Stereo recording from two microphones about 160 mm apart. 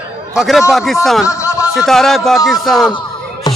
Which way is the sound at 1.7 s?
Centre (ahead or behind).